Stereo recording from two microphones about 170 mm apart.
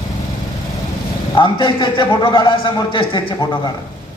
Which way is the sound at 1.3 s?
30° left (ahead or behind).